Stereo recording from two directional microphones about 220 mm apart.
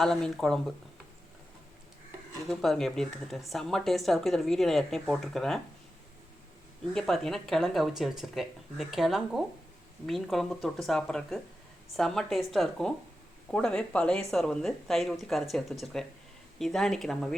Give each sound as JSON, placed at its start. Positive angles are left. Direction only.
{"t": 0.0, "sound": "speech", "side_deg": 0}
{"t": 2.5, "sound": "speech", "side_deg": 0}
{"t": 6.9, "sound": "speech", "side_deg": 0}